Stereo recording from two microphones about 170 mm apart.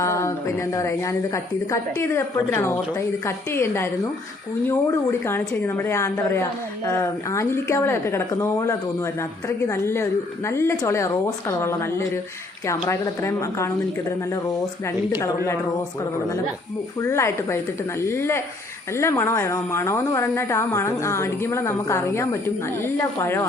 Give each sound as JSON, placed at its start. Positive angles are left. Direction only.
{"t": 0.0, "sound": "a woman's voice", "side_deg": 15}
{"t": 17.0, "sound": "a woman's voice", "side_deg": 15}